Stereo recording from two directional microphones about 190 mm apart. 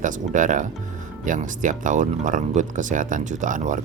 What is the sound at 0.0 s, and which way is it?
Speech, 40° right (ahead or behind).